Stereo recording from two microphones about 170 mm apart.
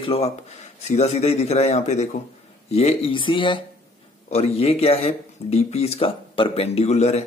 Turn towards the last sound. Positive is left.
turn(degrees=40)  # may be behind; listen again after turning